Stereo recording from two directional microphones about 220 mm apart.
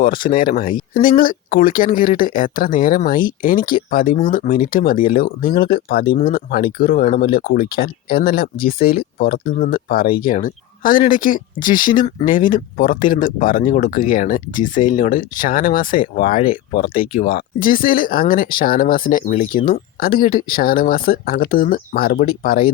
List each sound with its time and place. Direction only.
0.0 s speech: 40° left (ahead or behind)